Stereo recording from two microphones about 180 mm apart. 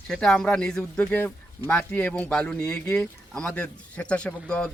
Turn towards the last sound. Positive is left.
turn(degrees=5)  # may be behind; listen again after turning